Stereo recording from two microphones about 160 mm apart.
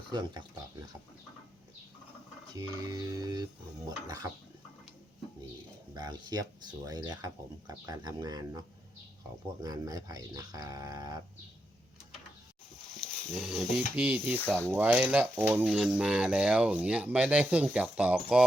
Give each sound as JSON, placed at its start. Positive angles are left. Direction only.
{"t": 0.1, "sound": "speech", "side_deg": -30}
{"t": 2.6, "sound": "speech", "side_deg": -20}
{"t": 5.9, "sound": "speech", "side_deg": -25}
{"t": 13.0, "sound": "wild animals", "side_deg": 0}
{"t": 13.6, "sound": "speech", "side_deg": -5}